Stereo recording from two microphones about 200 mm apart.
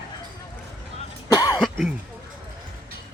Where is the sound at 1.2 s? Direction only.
20° left (ahead or behind).